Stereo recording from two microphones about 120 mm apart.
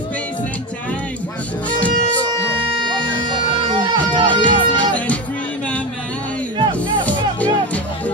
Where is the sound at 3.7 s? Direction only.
40° right (ahead or behind).